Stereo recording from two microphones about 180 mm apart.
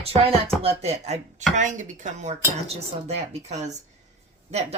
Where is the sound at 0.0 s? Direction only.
35° right (ahead or behind).